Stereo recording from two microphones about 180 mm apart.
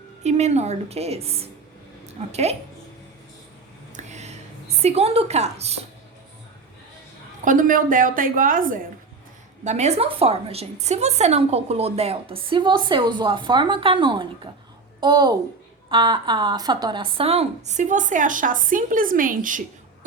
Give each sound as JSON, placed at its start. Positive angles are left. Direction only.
{"t": 0.2, "sound": "a woman's voice", "side_deg": -40}
{"t": 3.9, "sound": "a sound", "side_deg": -40}
{"t": 4.8, "sound": "a woman's voice", "side_deg": -35}
{"t": 7.4, "sound": "speech", "side_deg": -50}
{"t": 9.6, "sound": "a woman's voice", "side_deg": -40}